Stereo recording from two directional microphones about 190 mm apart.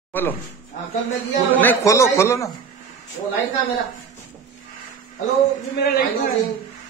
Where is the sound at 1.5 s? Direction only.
10° left (ahead or behind).